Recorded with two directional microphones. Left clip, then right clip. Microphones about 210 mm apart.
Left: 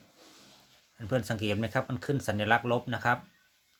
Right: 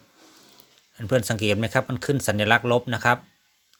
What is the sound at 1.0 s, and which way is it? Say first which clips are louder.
Speech: right 8 dB; 40° right (ahead or behind).